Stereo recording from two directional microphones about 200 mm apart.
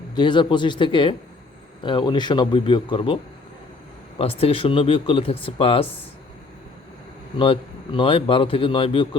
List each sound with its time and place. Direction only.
0.2 s speech: 20° left (ahead or behind)
4.2 s speech: 30° left (ahead or behind)
7.3 s speech: 25° left (ahead or behind)